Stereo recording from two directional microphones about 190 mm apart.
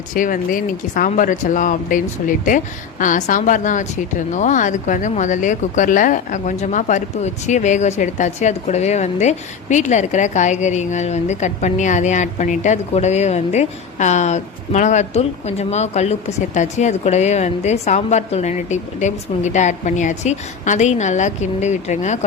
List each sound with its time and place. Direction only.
0.1 s speech: 45° left (ahead or behind)